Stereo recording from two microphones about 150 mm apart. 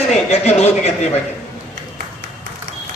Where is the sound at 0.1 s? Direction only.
45° left (ahead or behind).